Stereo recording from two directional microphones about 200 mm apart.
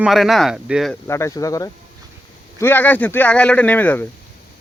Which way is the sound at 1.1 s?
15° left (ahead or behind).